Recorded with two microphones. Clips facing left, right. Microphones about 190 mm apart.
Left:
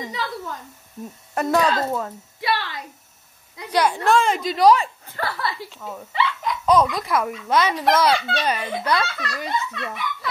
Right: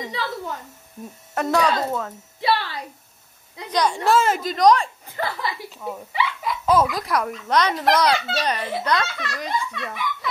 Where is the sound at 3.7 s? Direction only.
5° left (ahead or behind).